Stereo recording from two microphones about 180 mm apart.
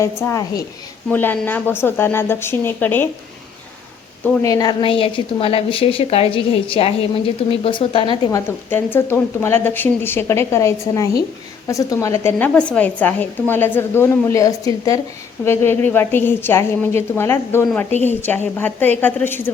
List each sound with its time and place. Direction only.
0.0 s speech: 15° left (ahead or behind)
4.4 s a woman's voice: 20° left (ahead or behind)
8.4 s speech: 10° left (ahead or behind)